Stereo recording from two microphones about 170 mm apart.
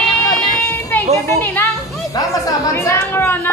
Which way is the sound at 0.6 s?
10° left (ahead or behind).